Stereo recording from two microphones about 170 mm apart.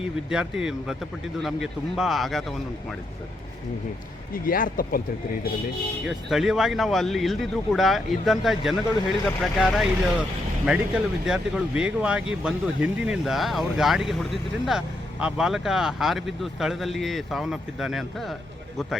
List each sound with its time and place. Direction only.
0.3 s speech: 5° right (ahead or behind)
4.4 s speech: 55° left (ahead or behind)
6.1 s speech: centre (ahead or behind)